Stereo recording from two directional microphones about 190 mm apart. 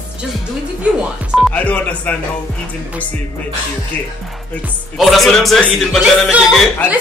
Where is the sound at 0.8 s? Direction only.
Centre (ahead or behind).